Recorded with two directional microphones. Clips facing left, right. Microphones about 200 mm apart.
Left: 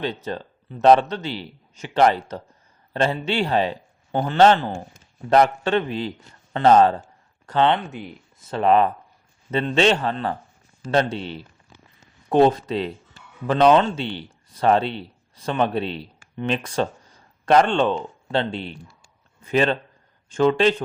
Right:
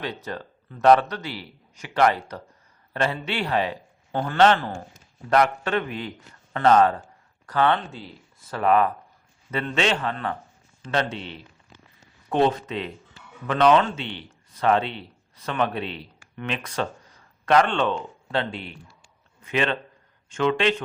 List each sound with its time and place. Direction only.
0.0 s a man's voice: 25° left (ahead or behind)